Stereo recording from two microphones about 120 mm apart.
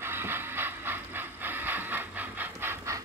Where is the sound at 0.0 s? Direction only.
20° right (ahead or behind).